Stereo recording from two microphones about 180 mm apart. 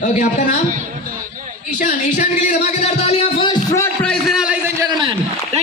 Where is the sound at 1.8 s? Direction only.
45° left (ahead or behind).